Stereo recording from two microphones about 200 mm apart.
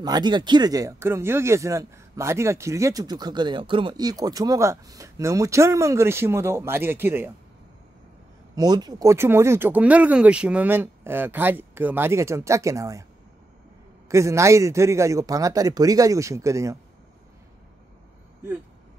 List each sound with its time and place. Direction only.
0.0 s speech: 20° right (ahead or behind)
8.5 s speech: 20° right (ahead or behind)
14.0 s speech: 15° right (ahead or behind)